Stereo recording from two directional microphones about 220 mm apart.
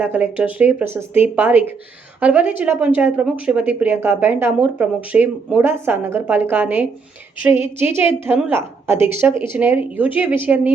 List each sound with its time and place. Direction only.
0.0 s a woman's voice: 5° right (ahead or behind)